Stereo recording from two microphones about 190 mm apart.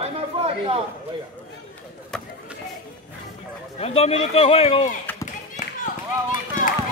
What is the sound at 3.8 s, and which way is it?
Speech, 30° left (ahead or behind).